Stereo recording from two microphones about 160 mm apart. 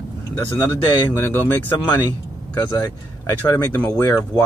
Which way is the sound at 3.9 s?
20° left (ahead or behind).